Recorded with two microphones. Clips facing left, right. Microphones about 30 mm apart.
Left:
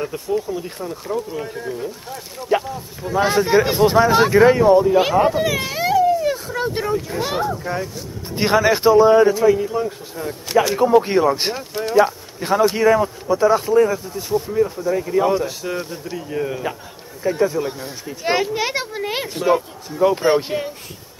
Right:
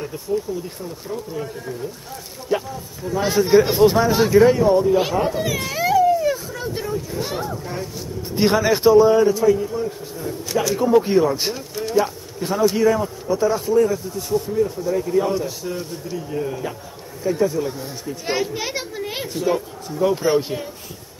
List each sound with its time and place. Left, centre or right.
0.0 s speech: left
2.5 s speech: left
3.1 s speech: left
3.3 s speech: left
4.1 s speech: left
4.6 s speech: centre
5.0 s speech: left
6.3 s speech: left
6.8 s speech: left
8.4 s speech: centre
18.2 s speech: left